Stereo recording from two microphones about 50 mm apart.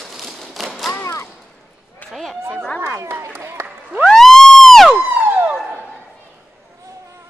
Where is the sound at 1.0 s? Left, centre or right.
Left.